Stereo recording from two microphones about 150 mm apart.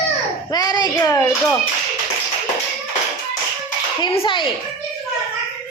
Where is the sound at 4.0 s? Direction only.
35° left (ahead or behind).